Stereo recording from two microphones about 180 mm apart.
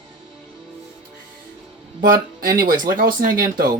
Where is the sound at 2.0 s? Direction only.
50° right (ahead or behind).